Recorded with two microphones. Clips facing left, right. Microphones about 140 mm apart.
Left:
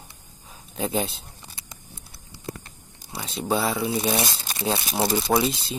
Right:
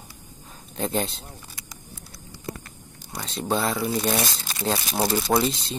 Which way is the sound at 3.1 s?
10° left (ahead or behind).